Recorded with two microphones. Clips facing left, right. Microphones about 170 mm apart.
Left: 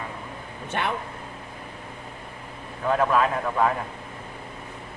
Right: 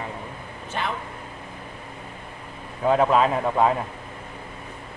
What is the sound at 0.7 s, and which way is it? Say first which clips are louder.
Speech: left 1 dB; 60° left (ahead or behind).